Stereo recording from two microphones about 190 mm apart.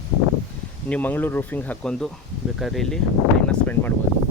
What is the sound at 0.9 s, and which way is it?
Speech, 10° left (ahead or behind).